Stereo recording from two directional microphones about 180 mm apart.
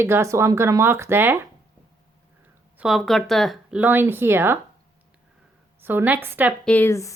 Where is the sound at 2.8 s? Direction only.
Centre (ahead or behind).